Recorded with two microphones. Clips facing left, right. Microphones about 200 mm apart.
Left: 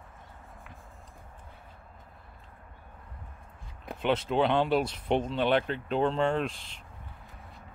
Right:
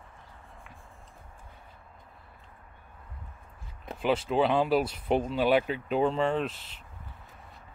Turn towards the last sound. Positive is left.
turn(degrees=-5)  # may be behind; listen again after turning